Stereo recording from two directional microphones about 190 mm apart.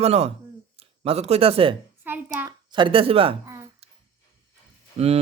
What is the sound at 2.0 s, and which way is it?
Speech, 10° right (ahead or behind).